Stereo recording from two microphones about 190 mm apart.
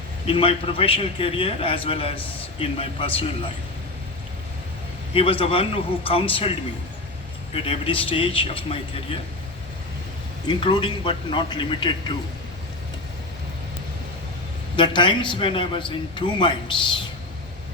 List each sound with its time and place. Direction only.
0.3 s a man's voice: 30° left (ahead or behind)
5.1 s a man's voice: 30° left (ahead or behind)
7.5 s a man's voice: 30° left (ahead or behind)
10.5 s a man's voice: 25° left (ahead or behind)
14.8 s a man's voice: 25° left (ahead or behind)